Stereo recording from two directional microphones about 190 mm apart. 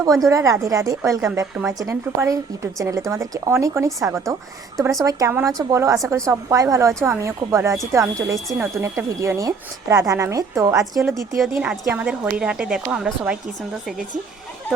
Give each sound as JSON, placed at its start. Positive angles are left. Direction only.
{"t": 0.3, "sound": "a woman's voice", "side_deg": -15}
{"t": 10.9, "sound": "a woman's voice", "side_deg": 0}